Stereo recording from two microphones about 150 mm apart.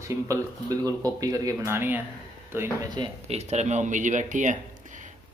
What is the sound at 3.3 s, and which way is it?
Speech, 45° right (ahead or behind).